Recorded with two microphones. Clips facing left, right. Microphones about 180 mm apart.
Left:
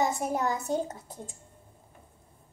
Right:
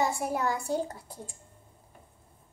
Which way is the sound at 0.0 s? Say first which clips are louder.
Left 1 dB; 20° left (ahead or behind).